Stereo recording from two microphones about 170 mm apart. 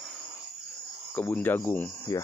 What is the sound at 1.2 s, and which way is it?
Speech, 10° left (ahead or behind).